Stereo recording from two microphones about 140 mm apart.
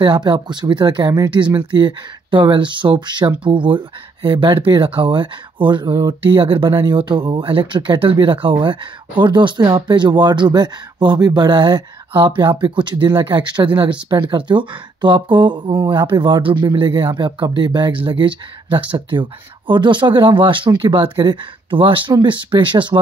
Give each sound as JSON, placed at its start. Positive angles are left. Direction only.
{"t": 0.0, "sound": "speech", "side_deg": -35}